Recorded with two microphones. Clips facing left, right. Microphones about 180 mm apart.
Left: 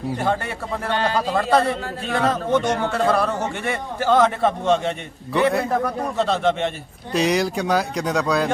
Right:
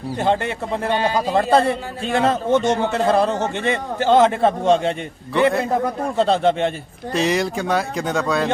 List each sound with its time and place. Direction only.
0.2 s a man's voice: 25° right (ahead or behind)
0.9 s a man's voice: 15° right (ahead or behind)
1.4 s a man's voice: 25° right (ahead or behind)
5.3 s speech: centre (ahead or behind)
5.8 s a man's voice: 30° right (ahead or behind)
7.1 s speech: centre (ahead or behind)